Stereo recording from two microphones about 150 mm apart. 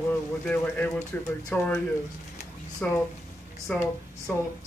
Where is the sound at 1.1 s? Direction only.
10° left (ahead or behind).